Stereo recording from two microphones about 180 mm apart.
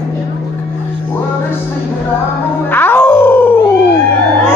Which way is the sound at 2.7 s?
10° left (ahead or behind).